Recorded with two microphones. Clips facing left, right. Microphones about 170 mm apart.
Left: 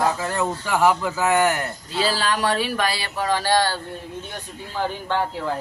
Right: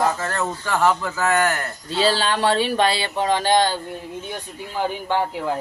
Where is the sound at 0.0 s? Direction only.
5° left (ahead or behind).